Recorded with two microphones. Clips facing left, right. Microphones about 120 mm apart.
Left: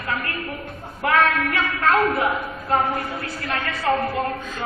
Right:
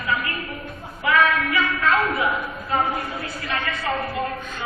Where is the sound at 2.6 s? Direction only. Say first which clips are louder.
Left 2 dB; 50° left (ahead or behind).